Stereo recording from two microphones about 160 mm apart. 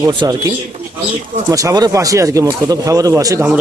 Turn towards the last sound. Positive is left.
turn(degrees=-20)  # may be behind; listen again after turning